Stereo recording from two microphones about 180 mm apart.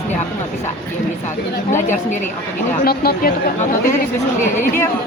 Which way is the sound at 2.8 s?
55° left (ahead or behind).